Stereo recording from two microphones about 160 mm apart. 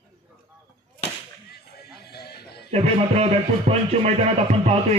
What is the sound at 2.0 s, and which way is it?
Music, 90° left.